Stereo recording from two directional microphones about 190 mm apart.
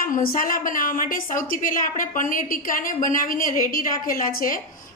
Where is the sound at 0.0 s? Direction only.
45° left (ahead or behind).